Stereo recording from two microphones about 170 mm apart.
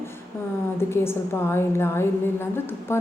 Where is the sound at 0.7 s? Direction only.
15° left (ahead or behind).